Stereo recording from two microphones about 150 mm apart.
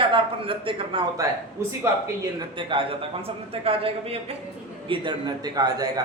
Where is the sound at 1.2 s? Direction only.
20° right (ahead or behind).